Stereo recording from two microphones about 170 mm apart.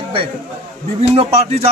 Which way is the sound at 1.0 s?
35° right (ahead or behind).